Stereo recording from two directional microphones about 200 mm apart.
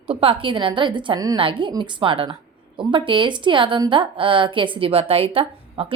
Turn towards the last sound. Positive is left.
turn(degrees=-30)  # may be behind; listen again after turning